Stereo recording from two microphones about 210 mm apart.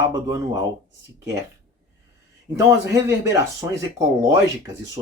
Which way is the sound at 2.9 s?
15° right (ahead or behind).